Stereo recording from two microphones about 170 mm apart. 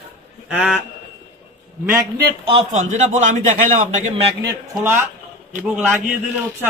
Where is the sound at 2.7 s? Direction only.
45° right (ahead or behind).